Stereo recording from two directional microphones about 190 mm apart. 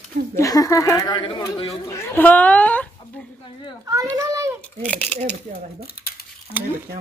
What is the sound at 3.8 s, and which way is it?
Children playing, 20° right (ahead or behind).